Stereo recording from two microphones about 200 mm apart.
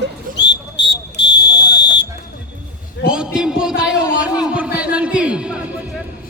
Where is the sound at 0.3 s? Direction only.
60° left (ahead or behind).